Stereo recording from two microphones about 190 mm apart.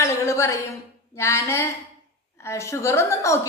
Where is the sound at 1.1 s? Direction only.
15° left (ahead or behind).